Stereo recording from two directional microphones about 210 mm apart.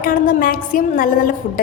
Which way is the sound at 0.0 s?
40° left (ahead or behind).